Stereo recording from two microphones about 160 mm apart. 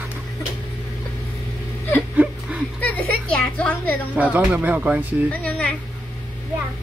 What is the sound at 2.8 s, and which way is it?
A woman's voice, 10° left (ahead or behind).